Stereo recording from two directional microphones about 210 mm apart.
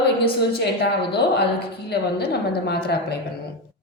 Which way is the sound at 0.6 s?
50° left (ahead or behind).